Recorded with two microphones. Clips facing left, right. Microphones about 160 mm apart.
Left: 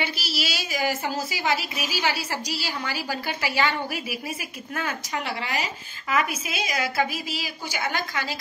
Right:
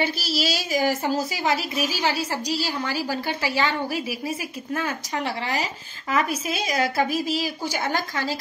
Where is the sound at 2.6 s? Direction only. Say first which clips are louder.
Right 3 dB; 35° right (ahead or behind).